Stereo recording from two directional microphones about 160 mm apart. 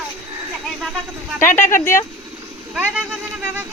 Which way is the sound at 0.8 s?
Centre (ahead or behind).